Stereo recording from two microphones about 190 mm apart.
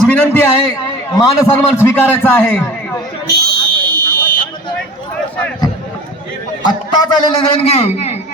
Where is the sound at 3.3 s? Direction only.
55° right (ahead or behind).